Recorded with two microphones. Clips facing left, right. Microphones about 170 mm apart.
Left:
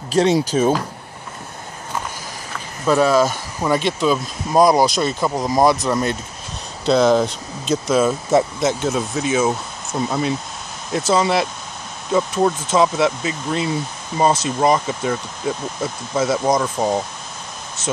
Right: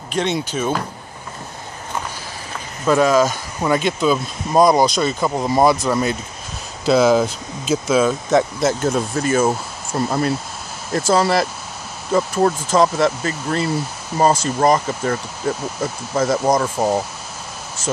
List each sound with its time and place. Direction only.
0.1 s speech: 35° left (ahead or behind)
2.9 s speech: 10° left (ahead or behind)